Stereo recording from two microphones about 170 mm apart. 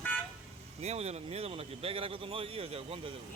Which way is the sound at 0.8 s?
40° right (ahead or behind).